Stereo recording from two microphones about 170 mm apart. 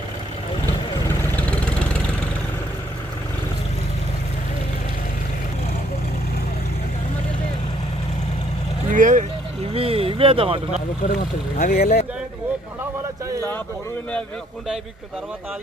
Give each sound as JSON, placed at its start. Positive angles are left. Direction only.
{"t": 1.2, "sound": "vehicle", "side_deg": 5}
{"t": 8.9, "sound": "vehicle", "side_deg": -50}
{"t": 9.7, "sound": "a sound", "side_deg": -35}
{"t": 11.1, "sound": "speech", "side_deg": 60}